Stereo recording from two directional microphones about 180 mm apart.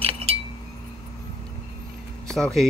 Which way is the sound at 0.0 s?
35° right (ahead or behind).